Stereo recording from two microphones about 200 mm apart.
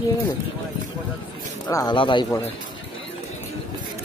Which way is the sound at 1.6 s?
20° left (ahead or behind).